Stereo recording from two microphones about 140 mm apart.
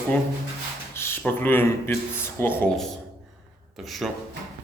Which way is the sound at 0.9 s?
15° left (ahead or behind).